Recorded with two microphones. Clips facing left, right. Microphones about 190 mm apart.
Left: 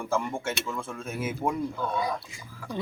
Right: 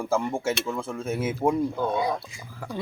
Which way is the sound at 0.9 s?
20° right (ahead or behind).